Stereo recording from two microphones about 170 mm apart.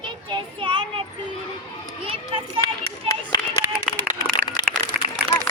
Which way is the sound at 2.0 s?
35° right (ahead or behind).